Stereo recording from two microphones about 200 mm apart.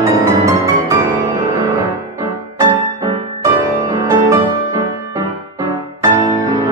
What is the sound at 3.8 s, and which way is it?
Music, 15° right (ahead or behind).